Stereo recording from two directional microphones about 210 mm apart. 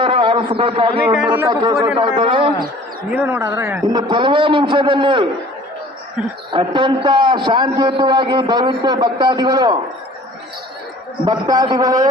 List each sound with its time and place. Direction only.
0.0 s a sound: 25° right (ahead or behind)
0.9 s a man's voice: 5° right (ahead or behind)
1.4 s a man's voice: 15° right (ahead or behind)
3.1 s a man's voice: 10° right (ahead or behind)
6.5 s a man's voice: 20° right (ahead or behind)
11.3 s a man's voice: 20° right (ahead or behind)